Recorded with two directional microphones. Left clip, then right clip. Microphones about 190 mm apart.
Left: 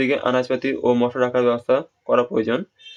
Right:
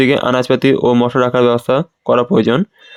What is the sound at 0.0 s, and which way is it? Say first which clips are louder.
A man's voice: right 7 dB; 50° right (ahead or behind).